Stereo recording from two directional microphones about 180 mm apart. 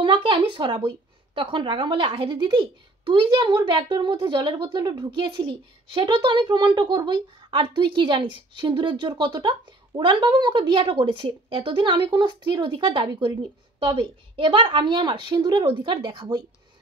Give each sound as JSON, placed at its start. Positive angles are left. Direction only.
{"t": 0.0, "sound": "a woman's voice", "side_deg": -30}